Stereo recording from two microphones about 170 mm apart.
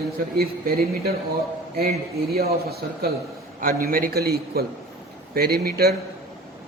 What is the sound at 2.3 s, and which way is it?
A man's voice, 65° right (ahead or behind).